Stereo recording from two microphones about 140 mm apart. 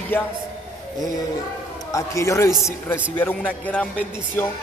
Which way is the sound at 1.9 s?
20° left (ahead or behind).